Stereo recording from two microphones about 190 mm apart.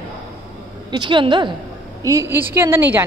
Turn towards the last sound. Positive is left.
turn(degrees=-10)  # may be behind; listen again after turning